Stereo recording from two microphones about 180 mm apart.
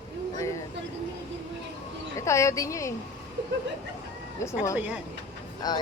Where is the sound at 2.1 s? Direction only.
15° left (ahead or behind).